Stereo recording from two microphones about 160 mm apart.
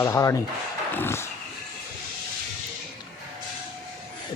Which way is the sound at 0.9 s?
15° left (ahead or behind).